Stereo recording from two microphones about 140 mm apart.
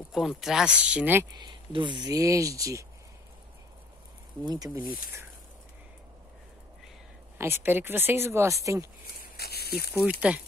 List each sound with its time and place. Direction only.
0.1 s speech: centre (ahead or behind)
1.4 s speech: 35° right (ahead or behind)
4.5 s speech: 25° right (ahead or behind)
7.3 s speech: 15° right (ahead or behind)
9.2 s a sound: 90° left
9.9 s speech: 10° right (ahead or behind)